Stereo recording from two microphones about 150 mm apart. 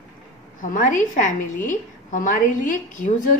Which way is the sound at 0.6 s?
60° left (ahead or behind).